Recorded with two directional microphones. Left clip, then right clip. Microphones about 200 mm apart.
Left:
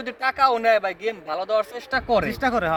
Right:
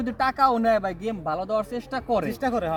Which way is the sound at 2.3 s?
20° right (ahead or behind).